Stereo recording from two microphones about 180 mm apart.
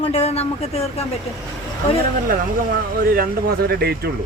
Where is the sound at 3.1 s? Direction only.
60° right (ahead or behind).